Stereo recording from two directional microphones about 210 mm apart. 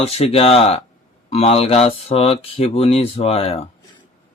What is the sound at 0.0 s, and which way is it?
Speech, 30° left (ahead or behind).